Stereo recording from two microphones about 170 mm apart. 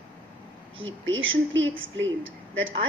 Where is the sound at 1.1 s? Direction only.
90° right.